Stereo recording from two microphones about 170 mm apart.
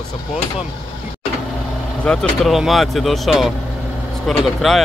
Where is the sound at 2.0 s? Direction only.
5° left (ahead or behind).